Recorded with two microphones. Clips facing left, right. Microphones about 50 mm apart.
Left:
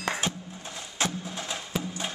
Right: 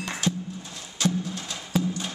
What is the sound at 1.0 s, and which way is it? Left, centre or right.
Music, left.